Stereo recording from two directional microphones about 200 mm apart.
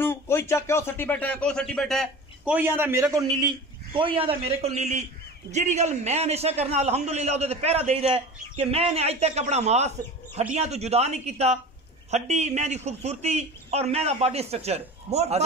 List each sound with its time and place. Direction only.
0.0 s a man's voice: 10° left (ahead or behind); by 15.4 s 35° right (ahead or behind)